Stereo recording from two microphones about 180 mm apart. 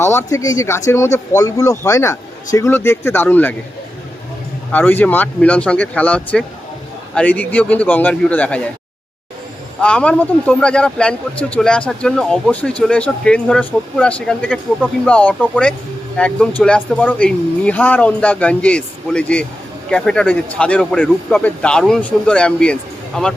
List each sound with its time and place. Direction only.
0.0 s a man's voice: 15° left (ahead or behind)
4.7 s a man's voice: 10° left (ahead or behind)
9.8 s a man's voice: 5° left (ahead or behind)